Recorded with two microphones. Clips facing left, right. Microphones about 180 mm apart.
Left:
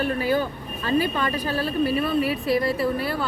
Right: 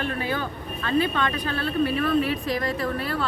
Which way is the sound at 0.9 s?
10° left (ahead or behind).